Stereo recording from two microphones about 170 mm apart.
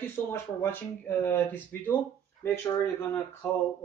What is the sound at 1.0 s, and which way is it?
Speech, 15° left (ahead or behind).